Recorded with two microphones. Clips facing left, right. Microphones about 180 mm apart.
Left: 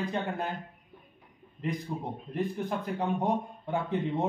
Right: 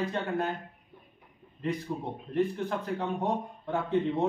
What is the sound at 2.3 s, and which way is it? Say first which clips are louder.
Speech: right 3 dB; 15° left (ahead or behind).